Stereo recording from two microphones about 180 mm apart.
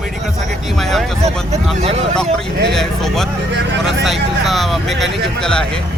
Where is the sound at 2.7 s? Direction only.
Centre (ahead or behind).